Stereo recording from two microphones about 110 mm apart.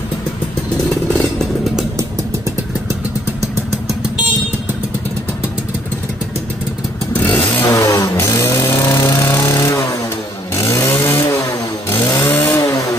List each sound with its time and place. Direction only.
7.2 s vehicle: 15° left (ahead or behind)
7.6 s chainsaw: 30° left (ahead or behind)
12.3 s chainsaw: 25° left (ahead or behind)